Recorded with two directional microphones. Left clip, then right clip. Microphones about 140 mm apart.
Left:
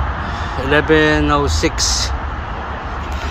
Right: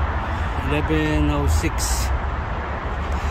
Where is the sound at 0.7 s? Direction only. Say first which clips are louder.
Left 11 dB; 15° left (ahead or behind).